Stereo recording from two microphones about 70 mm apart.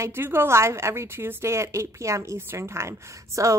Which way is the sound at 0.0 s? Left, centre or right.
Right.